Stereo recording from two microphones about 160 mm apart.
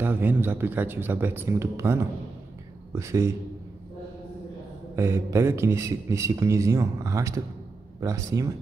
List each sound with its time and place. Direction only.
0.0 s a man's voice: 10° right (ahead or behind)
4.9 s a man's voice: 15° right (ahead or behind)